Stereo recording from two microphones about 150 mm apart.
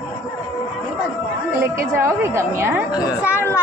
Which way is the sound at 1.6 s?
20° right (ahead or behind).